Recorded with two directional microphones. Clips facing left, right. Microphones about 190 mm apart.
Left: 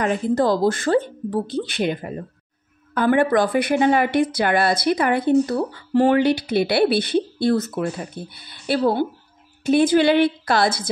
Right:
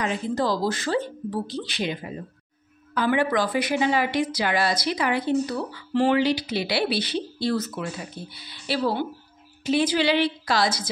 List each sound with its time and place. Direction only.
0.0 s a woman's voice: 50° left (ahead or behind)